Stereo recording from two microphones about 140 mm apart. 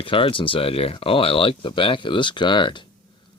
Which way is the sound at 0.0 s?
40° left (ahead or behind).